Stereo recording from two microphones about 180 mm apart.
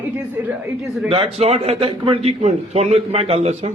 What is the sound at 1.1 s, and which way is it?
A man's voice, 35° right (ahead or behind).